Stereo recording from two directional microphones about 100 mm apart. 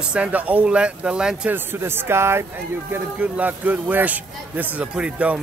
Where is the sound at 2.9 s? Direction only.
15° right (ahead or behind).